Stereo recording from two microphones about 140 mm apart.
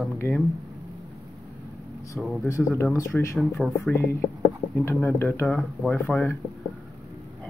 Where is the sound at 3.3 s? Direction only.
5° right (ahead or behind).